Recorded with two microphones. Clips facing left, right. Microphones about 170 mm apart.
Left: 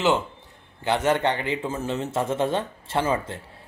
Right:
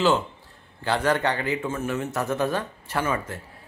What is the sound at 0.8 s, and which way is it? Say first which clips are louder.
Speech: left 1 dB; 20° left (ahead or behind).